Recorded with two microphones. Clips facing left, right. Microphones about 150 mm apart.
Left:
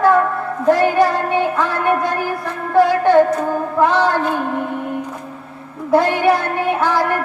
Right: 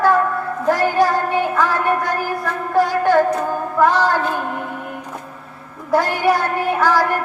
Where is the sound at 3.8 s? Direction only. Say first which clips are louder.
Even; 20° left (ahead or behind).